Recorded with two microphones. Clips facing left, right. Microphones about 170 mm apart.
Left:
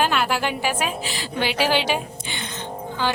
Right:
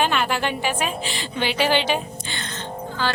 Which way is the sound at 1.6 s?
10° left (ahead or behind).